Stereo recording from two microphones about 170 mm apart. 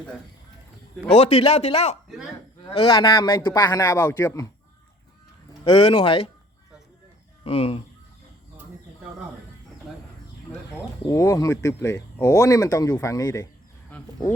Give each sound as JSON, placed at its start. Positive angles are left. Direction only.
{"t": 1.0, "sound": "a man's voice", "side_deg": 40}
{"t": 2.0, "sound": "speech", "side_deg": -5}
{"t": 2.6, "sound": "speech", "side_deg": 30}
{"t": 5.6, "sound": "a man's voice", "side_deg": 30}
{"t": 7.4, "sound": "speech", "side_deg": 35}
{"t": 10.5, "sound": "a sound", "side_deg": 10}
{"t": 11.0, "sound": "speech", "side_deg": 20}
{"t": 13.9, "sound": "a sound", "side_deg": 10}